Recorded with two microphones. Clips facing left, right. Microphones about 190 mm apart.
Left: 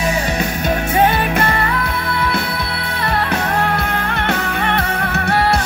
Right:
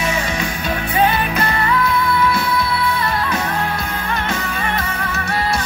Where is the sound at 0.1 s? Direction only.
40° left (ahead or behind).